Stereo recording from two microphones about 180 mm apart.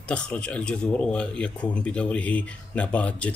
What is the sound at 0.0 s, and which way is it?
Speech, 5° left (ahead or behind).